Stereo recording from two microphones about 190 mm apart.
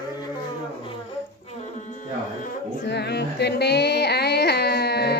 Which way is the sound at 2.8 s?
60° left (ahead or behind).